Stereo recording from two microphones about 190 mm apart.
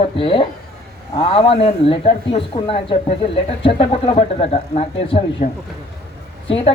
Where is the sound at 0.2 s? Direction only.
25° left (ahead or behind).